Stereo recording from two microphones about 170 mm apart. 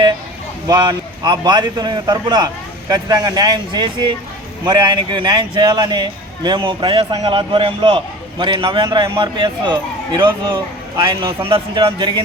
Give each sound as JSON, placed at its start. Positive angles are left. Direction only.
{"t": 0.7, "sound": "a man's voice", "side_deg": -25}